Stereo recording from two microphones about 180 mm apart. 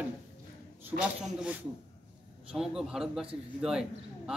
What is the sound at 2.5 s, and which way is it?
Speech, 5° right (ahead or behind).